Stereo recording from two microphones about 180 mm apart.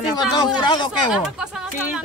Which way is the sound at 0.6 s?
25° left (ahead or behind).